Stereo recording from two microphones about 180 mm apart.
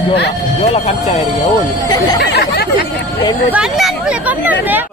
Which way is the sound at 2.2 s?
65° left (ahead or behind).